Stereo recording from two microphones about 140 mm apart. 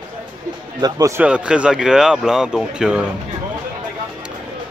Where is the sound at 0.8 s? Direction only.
25° right (ahead or behind).